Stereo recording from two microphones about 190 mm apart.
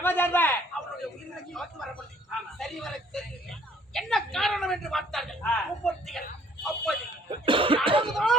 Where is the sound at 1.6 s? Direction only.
Centre (ahead or behind).